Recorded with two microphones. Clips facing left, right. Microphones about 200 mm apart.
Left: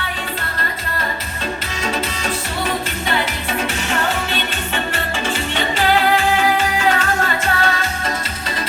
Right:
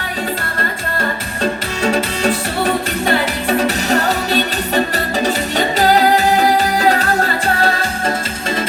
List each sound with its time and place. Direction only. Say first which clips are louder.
3.6 s music: right 4 dB; 40° right (ahead or behind)